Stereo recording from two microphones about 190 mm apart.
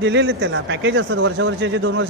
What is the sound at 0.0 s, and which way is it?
Speech, 70° right (ahead or behind).